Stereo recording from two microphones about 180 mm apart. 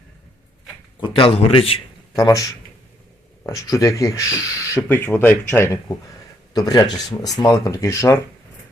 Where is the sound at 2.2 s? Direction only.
20° left (ahead or behind).